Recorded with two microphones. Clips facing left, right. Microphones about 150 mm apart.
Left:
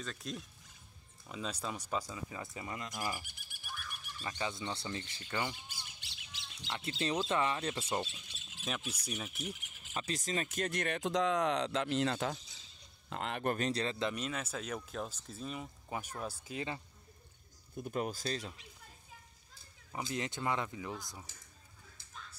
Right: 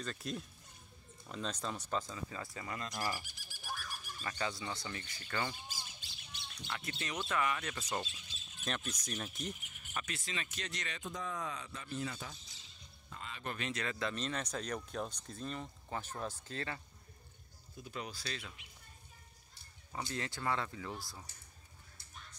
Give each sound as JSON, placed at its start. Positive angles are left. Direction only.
{"t": 0.0, "sound": "speech", "side_deg": 0}
{"t": 3.3, "sound": "a sound", "side_deg": 60}
{"t": 4.2, "sound": "speech", "side_deg": 20}
{"t": 5.7, "sound": "squawk", "side_deg": 65}
{"t": 6.7, "sound": "speech", "side_deg": 30}
{"t": 8.6, "sound": "speech", "side_deg": 5}
{"t": 9.9, "sound": "speech", "side_deg": 35}
{"t": 13.7, "sound": "speech", "side_deg": 30}
{"t": 14.1, "sound": "speech", "side_deg": 5}
{"t": 17.7, "sound": "speech", "side_deg": 50}
{"t": 19.9, "sound": "speech", "side_deg": 20}
{"t": 21.3, "sound": "speech", "side_deg": 90}